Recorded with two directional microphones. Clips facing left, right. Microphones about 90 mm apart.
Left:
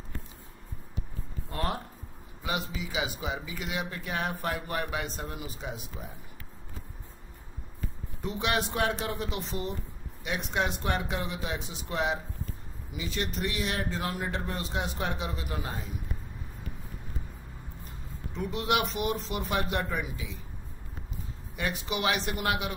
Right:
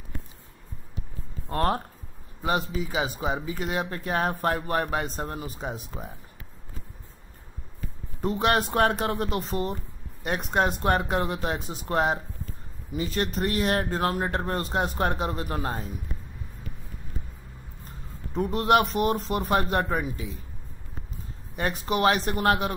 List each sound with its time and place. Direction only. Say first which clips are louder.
1.5 s speech: right 7 dB; 45° right (ahead or behind)
8.2 s speech: right 6 dB; 45° right (ahead or behind)
18.3 s speech: right 7 dB; 40° right (ahead or behind)
21.5 s speech: right 6 dB; 40° right (ahead or behind)